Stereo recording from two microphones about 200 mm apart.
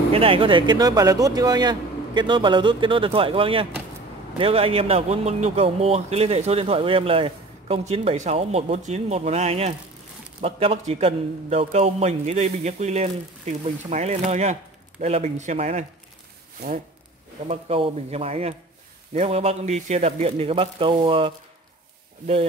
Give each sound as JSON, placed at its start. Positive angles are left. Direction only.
{"t": 0.1, "sound": "a man's voice", "side_deg": -25}
{"t": 17.5, "sound": "a man's voice", "side_deg": -30}